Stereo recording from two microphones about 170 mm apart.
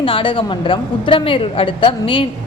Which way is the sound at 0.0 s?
30° left (ahead or behind).